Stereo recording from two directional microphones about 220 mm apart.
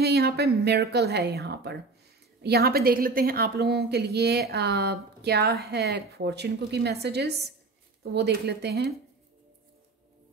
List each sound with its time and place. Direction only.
0.0 s a woman's voice: 45° right (ahead or behind)